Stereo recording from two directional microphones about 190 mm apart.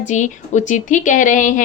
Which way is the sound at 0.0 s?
40° left (ahead or behind).